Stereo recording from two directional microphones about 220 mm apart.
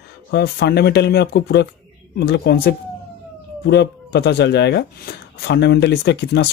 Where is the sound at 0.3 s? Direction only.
45° left (ahead or behind).